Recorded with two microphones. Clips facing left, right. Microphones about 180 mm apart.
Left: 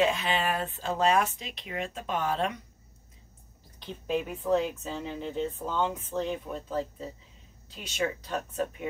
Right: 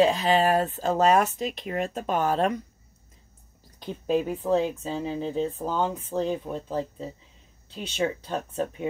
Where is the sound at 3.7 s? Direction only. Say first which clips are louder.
Right 5 dB; 40° right (ahead or behind).